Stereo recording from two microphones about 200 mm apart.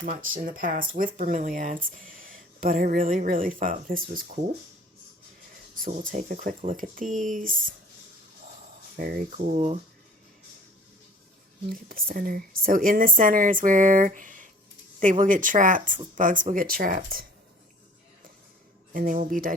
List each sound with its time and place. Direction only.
0.0 s speech: 45° right (ahead or behind)
5.7 s speech: 45° right (ahead or behind)
9.0 s speech: 45° right (ahead or behind)
11.7 s speech: 45° right (ahead or behind)
18.9 s speech: 40° right (ahead or behind)